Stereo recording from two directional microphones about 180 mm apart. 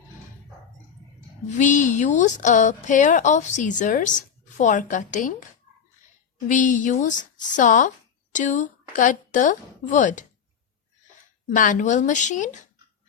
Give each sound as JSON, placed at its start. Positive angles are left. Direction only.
{"t": 1.5, "sound": "a woman's voice", "side_deg": 45}
{"t": 6.5, "sound": "speech", "side_deg": 45}
{"t": 11.5, "sound": "a woman's voice", "side_deg": 45}